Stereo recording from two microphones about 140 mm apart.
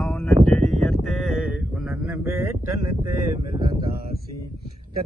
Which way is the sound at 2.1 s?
20° right (ahead or behind).